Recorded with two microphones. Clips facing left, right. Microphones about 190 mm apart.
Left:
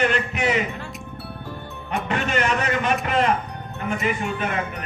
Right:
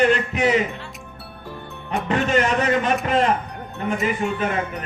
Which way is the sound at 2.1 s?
35° right (ahead or behind).